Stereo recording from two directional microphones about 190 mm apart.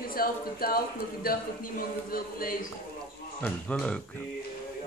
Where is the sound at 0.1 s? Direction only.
50° left (ahead or behind).